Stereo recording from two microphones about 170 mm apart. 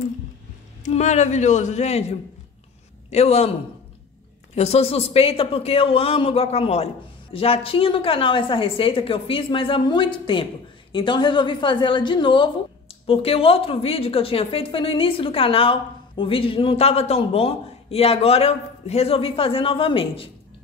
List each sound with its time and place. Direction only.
0.8 s a man's voice: 45° left (ahead or behind)
4.6 s a woman's voice: 40° left (ahead or behind)